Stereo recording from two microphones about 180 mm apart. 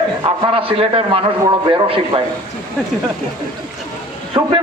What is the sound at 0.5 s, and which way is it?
A man's voice, 30° right (ahead or behind).